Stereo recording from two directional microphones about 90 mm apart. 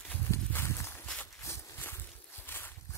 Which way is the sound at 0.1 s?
25° left (ahead or behind).